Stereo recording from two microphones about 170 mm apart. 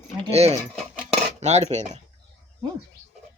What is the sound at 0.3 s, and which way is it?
Speech, 35° right (ahead or behind).